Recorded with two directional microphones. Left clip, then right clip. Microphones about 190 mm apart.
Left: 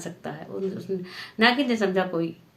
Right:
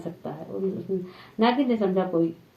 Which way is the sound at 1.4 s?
20° left (ahead or behind).